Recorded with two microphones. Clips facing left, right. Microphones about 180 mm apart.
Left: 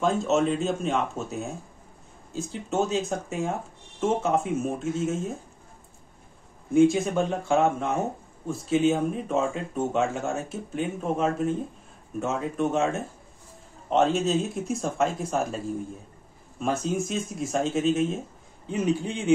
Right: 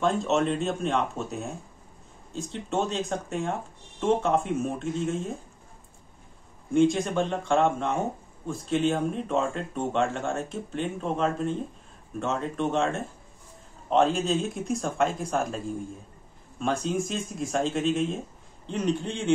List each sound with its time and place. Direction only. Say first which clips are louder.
0.0 s speech: left 1 dB; centre (ahead or behind)
6.7 s speech: left 2 dB; 5° left (ahead or behind)